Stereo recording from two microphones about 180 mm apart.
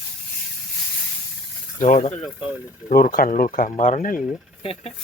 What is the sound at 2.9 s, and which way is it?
Speech, 50° left (ahead or behind).